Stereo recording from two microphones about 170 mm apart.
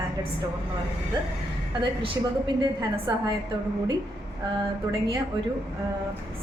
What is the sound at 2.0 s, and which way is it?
A woman's voice, 25° right (ahead or behind).